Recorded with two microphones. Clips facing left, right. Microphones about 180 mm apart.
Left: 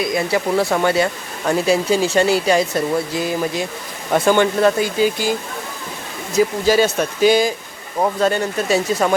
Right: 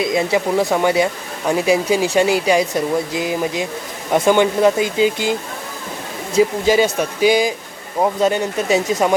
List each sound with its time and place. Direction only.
0.0 s speech: 20° right (ahead or behind)
6.3 s speech: 15° right (ahead or behind)